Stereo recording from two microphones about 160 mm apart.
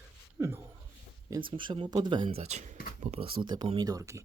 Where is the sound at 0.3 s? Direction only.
15° right (ahead or behind).